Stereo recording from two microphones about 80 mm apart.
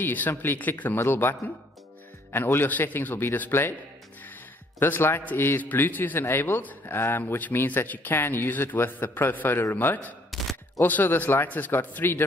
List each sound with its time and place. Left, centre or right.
0.0 s a man's voice: left
2.3 s a man's voice: left
4.7 s a man's voice: left
10.3 s a sound: centre
10.8 s a man's voice: left